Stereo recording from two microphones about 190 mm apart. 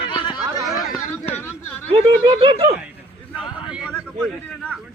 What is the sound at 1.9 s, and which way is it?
Speech, 25° right (ahead or behind).